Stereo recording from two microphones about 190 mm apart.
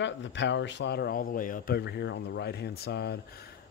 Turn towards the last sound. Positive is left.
turn(degrees=55)  # may be behind; listen again after turning